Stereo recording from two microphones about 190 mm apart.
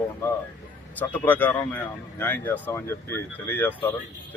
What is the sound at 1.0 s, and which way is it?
A man's voice, 10° left (ahead or behind).